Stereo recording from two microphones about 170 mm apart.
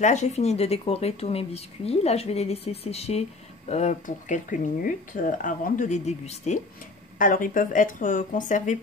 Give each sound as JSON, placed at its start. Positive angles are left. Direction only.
{"t": 0.0, "sound": "speech", "side_deg": 45}
{"t": 7.2, "sound": "speech", "side_deg": 55}